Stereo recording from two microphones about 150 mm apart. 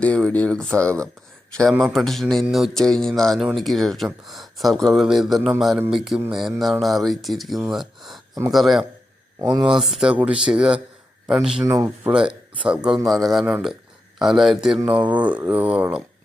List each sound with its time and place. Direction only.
0.0 s speech: 10° left (ahead or behind)
9.4 s speech: 25° right (ahead or behind)
9.6 s speech: centre (ahead or behind)
11.6 s speech: 20° right (ahead or behind)
12.1 s speech: 5° right (ahead or behind)